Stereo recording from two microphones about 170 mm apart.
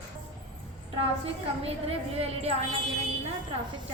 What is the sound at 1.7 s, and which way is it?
Speech, 35° right (ahead or behind).